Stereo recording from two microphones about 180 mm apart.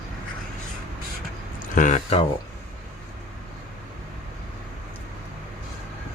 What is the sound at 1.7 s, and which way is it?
Speech, 45° left (ahead or behind).